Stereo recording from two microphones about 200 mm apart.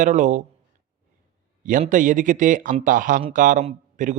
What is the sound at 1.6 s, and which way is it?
A man's voice, 40° right (ahead or behind).